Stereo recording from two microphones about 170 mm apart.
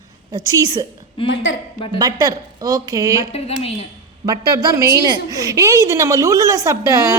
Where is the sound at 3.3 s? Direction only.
35° left (ahead or behind).